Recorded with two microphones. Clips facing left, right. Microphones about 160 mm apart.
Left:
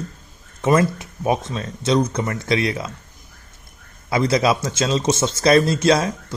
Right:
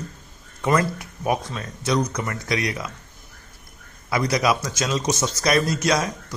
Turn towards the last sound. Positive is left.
turn(degrees=30)  # may be behind; listen again after turning